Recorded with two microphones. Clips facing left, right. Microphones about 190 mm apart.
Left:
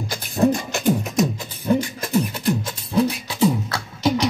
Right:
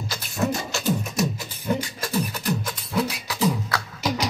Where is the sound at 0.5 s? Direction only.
15° left (ahead or behind).